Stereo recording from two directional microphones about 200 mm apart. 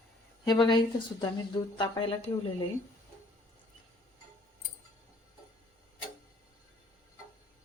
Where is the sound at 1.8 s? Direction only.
25° left (ahead or behind).